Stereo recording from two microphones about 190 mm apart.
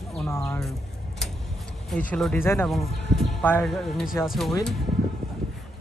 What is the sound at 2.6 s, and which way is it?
Speech, centre (ahead or behind).